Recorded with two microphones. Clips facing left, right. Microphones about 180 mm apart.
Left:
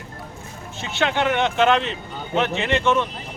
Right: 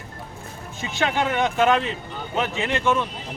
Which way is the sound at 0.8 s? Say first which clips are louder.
Left 2 dB; 15° right (ahead or behind).